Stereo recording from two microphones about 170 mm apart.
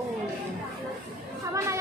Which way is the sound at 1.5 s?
15° right (ahead or behind).